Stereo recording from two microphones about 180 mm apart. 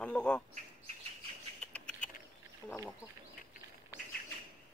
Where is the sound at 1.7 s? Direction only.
5° left (ahead or behind).